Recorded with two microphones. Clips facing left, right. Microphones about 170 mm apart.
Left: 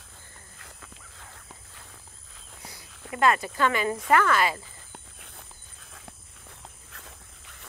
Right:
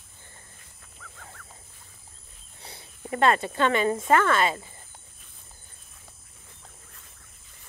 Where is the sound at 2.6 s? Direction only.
30° right (ahead or behind).